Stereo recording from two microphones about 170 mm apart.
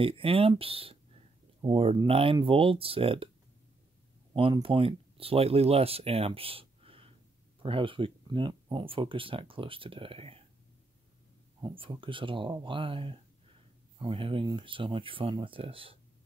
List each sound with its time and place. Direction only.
0.0 s speech: 35° right (ahead or behind)
4.3 s speech: 30° right (ahead or behind)
11.6 s speech: 30° right (ahead or behind)